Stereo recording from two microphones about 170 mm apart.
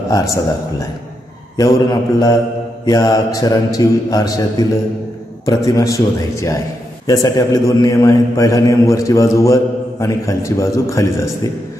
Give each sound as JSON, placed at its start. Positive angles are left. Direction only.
{"t": 0.1, "sound": "a man's voice", "side_deg": 20}
{"t": 1.6, "sound": "a man's voice", "side_deg": 20}